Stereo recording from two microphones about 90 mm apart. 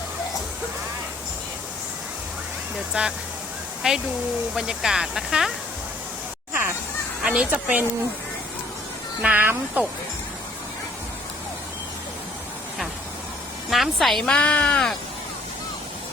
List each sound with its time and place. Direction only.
2.9 s speech: 10° right (ahead or behind)
7.2 s speech: 5° right (ahead or behind)
9.2 s speech: 20° right (ahead or behind)
13.7 s a woman's voice: centre (ahead or behind)